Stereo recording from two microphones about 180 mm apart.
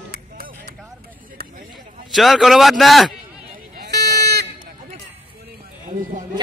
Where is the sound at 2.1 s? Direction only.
Centre (ahead or behind).